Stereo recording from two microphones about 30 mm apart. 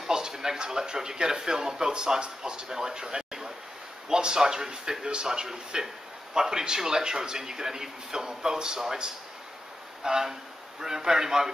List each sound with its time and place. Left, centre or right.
0.1 s a sound: right
0.7 s speech: centre
10.0 s speech: centre